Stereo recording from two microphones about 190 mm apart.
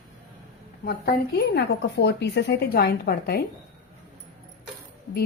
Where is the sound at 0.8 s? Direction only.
55° left (ahead or behind).